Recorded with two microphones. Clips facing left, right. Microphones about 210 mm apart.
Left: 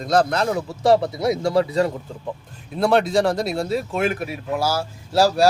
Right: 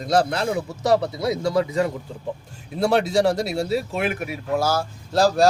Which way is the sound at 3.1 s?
55° left (ahead or behind).